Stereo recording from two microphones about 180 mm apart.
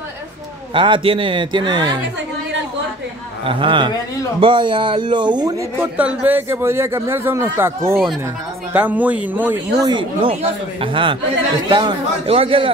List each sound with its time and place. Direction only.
0.7 s speech: 25° right (ahead or behind)
3.4 s speech: 30° right (ahead or behind)
7.9 s speech: centre (ahead or behind)
8.7 s speech: 10° right (ahead or behind)
9.8 s a man's voice: 30° right (ahead or behind)